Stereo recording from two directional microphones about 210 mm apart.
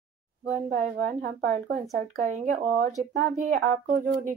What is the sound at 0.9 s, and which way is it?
Speech, 45° right (ahead or behind).